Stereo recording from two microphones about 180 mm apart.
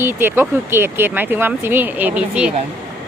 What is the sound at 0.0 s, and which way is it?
A woman's voice, 10° right (ahead or behind).